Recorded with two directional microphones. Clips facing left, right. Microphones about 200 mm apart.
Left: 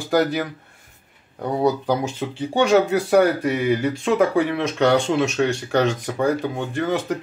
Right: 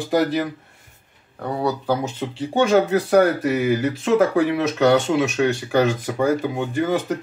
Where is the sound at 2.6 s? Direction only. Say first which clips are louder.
Even; centre (ahead or behind).